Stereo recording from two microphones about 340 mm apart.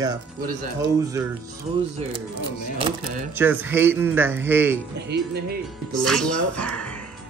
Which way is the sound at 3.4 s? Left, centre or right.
Centre.